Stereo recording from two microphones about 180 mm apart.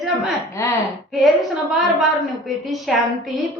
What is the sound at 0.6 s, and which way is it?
Speech, 15° left (ahead or behind).